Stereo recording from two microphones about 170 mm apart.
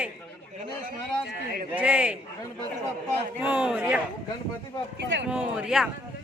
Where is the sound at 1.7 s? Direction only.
10° right (ahead or behind).